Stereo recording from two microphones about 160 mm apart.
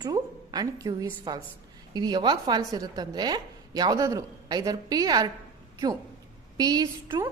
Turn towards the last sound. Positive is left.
turn(degrees=-25)  # may be behind; listen again after turning